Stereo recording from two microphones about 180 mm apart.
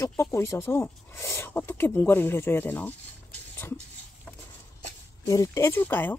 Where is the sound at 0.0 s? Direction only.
15° left (ahead or behind).